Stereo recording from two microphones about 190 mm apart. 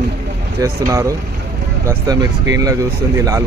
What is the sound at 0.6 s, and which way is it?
Speech, 15° right (ahead or behind).